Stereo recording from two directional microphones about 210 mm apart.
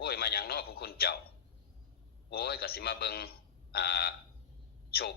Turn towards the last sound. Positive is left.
turn(degrees=45)  # may be behind; listen again after turning